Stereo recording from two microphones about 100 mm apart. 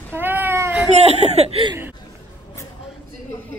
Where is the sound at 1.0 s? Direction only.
90° right.